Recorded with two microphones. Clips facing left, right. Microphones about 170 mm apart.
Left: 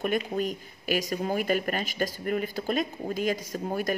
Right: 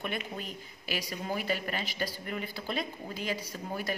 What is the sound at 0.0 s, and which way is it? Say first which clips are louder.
A woman's voice: left 9 dB; 45° left (ahead or behind).